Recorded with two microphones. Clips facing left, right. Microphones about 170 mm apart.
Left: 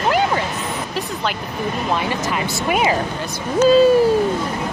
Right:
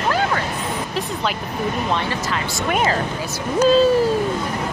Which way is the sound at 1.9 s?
10° left (ahead or behind).